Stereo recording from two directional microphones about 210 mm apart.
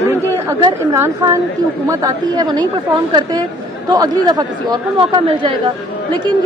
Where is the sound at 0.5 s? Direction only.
10° right (ahead or behind).